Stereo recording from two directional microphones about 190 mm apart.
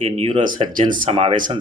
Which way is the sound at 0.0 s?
30° right (ahead or behind).